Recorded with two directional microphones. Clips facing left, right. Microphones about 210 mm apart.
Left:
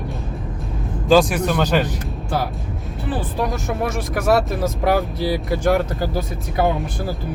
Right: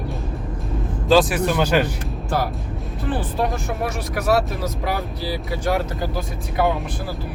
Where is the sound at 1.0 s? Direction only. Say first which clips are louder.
Left 1 dB; centre (ahead or behind).